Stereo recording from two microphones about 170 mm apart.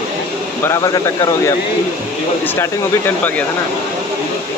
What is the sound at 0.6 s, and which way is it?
Speech, 20° left (ahead or behind).